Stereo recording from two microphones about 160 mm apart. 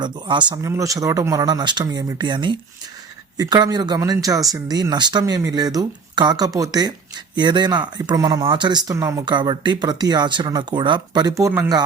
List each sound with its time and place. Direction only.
0.0 s speech: 30° right (ahead or behind)